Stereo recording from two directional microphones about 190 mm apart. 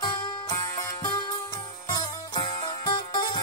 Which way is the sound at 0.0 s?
20° left (ahead or behind).